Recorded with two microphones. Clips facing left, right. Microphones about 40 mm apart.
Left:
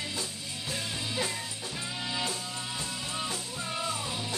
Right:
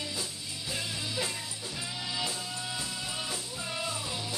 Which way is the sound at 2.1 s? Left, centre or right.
Centre.